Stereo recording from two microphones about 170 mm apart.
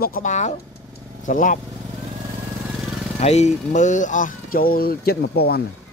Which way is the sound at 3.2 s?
40° left (ahead or behind).